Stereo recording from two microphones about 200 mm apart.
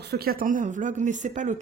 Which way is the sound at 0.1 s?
50° right (ahead or behind).